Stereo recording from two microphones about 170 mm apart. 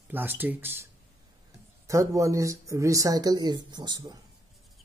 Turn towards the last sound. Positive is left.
turn(degrees=-25)  # may be behind; listen again after turning